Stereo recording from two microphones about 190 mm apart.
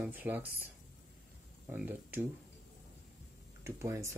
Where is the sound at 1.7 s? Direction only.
10° right (ahead or behind).